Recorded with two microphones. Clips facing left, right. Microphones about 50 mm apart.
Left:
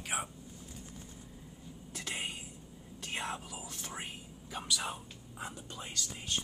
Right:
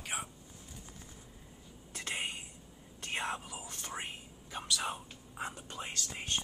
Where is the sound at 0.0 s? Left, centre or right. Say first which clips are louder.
Left 3 dB; centre.